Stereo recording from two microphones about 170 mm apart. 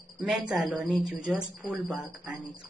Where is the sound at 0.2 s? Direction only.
5° right (ahead or behind).